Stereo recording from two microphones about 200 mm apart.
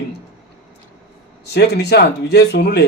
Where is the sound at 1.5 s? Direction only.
55° left (ahead or behind).